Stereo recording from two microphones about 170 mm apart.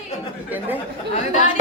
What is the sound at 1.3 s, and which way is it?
Speech, 45° left (ahead or behind).